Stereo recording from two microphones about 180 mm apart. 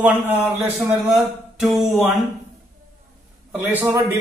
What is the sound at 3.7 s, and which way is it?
Speech, 10° right (ahead or behind).